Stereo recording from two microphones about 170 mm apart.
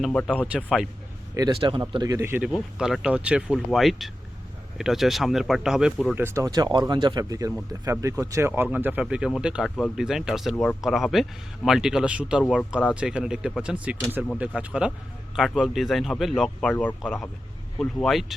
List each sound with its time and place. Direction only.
0.0 s speech: 5° left (ahead or behind)
1.5 s a man's voice: 35° right (ahead or behind)
1.9 s speech: 20° right (ahead or behind)
2.4 s speech: 5° right (ahead or behind)
6.1 s speech: 15° right (ahead or behind)